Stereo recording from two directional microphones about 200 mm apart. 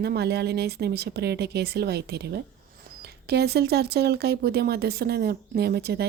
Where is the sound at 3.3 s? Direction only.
55° right (ahead or behind).